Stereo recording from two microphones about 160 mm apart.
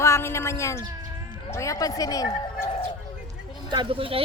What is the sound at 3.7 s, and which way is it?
Speech, 30° right (ahead or behind).